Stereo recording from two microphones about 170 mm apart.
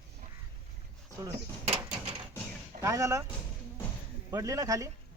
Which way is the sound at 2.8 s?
15° right (ahead or behind).